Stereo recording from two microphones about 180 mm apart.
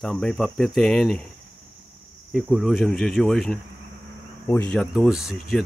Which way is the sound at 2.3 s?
5° right (ahead or behind).